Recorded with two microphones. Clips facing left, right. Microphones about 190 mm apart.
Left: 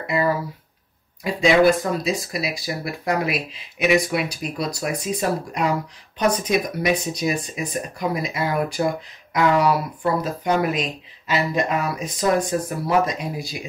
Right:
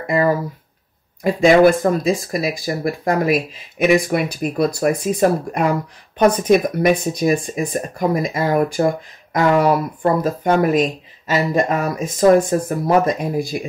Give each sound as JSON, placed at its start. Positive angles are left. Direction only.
{"t": 0.0, "sound": "speech", "side_deg": -45}